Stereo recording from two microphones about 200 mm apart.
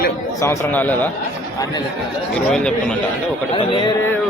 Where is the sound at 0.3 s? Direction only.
10° left (ahead or behind).